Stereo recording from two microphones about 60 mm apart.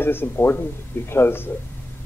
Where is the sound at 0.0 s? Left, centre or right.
Left.